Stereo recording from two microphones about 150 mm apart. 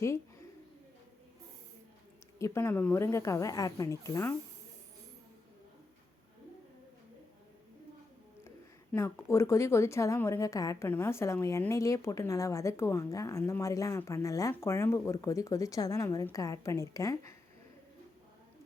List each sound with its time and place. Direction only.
2.4 s speech: 15° left (ahead or behind)
8.4 s speech: 15° left (ahead or behind)